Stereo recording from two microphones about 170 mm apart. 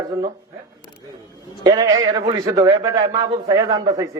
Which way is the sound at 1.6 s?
20° right (ahead or behind).